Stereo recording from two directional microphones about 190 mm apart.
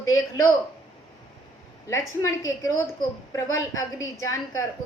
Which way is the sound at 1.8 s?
15° left (ahead or behind).